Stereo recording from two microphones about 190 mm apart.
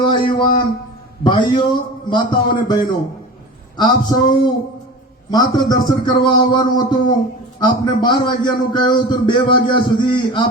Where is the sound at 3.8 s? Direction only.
20° left (ahead or behind).